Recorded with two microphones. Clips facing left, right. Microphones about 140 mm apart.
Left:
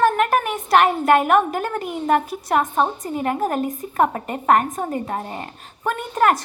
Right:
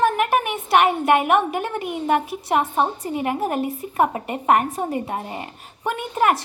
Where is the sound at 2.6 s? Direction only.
15° right (ahead or behind).